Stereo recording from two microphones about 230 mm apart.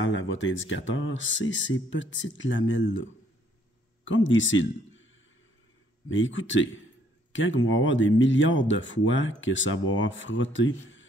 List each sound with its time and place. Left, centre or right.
0.0 s a man's voice: left
6.0 s speech: left